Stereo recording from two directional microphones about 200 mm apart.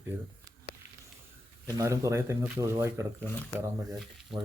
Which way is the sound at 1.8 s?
15° right (ahead or behind).